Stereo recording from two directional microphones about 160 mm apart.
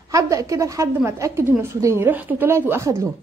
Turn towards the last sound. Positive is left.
turn(degrees=-15)  # may be behind; listen again after turning